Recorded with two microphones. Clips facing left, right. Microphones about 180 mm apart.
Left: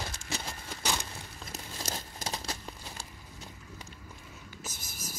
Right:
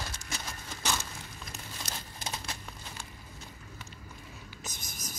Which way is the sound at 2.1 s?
35° left (ahead or behind).